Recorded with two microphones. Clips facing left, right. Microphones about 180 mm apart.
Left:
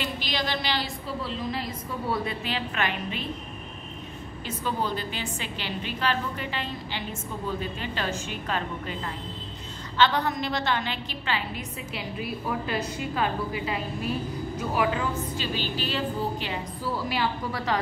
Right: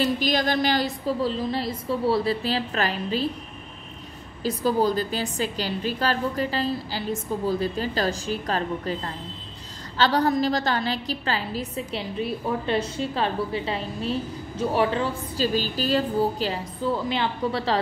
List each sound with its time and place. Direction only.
0.0 s a woman's voice: 45° right (ahead or behind)
4.4 s a woman's voice: 35° right (ahead or behind)
16.8 s a woman's voice: 25° right (ahead or behind)